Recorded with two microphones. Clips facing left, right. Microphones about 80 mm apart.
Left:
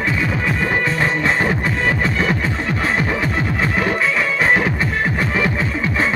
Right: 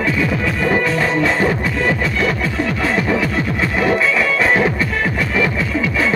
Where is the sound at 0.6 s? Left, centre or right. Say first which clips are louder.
Right 4 dB; left.